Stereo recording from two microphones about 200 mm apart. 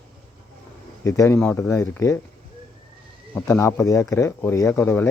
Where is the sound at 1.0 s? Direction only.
15° left (ahead or behind).